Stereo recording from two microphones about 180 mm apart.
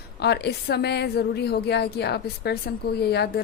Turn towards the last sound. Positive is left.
turn(degrees=65)  # may be behind; listen again after turning